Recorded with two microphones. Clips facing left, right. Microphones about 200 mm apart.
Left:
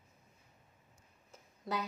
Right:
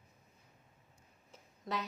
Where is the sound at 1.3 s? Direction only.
Centre (ahead or behind).